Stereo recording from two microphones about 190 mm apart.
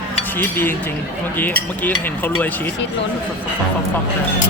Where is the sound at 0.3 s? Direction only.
10° left (ahead or behind).